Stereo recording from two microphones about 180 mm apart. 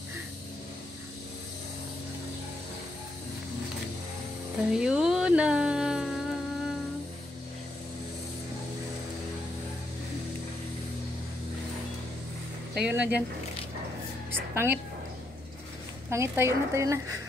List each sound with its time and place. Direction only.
4.7 s a sound: 5° right (ahead or behind)
12.7 s a woman's voice: 5° right (ahead or behind)
14.5 s a woman's voice: 15° right (ahead or behind)
16.1 s a woman's voice: 15° right (ahead or behind)